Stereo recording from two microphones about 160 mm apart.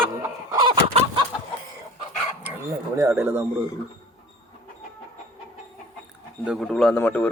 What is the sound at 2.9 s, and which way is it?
Speech, 15° right (ahead or behind).